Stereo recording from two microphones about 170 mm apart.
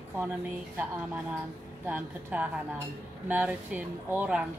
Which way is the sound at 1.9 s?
10° right (ahead or behind).